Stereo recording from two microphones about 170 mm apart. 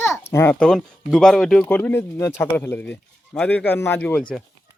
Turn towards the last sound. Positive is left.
turn(degrees=5)  # may be behind; listen again after turning